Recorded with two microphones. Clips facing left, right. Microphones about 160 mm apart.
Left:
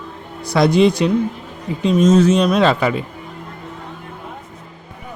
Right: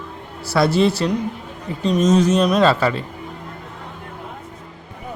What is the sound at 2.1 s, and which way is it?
Speech, 10° right (ahead or behind).